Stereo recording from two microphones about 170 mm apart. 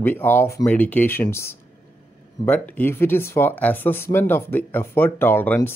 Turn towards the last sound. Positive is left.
turn(degrees=10)  # may be behind; listen again after turning